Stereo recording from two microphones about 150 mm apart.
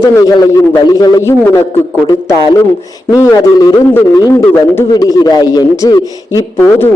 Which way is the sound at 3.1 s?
25° left (ahead or behind).